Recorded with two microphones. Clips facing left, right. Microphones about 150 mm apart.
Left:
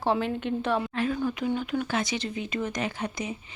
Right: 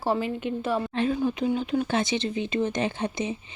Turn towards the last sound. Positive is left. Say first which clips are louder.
# right 4 dB
turn(degrees=-25)  # may be behind; listen again after turning